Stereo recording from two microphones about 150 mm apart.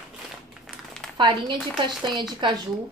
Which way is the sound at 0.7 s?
5° left (ahead or behind).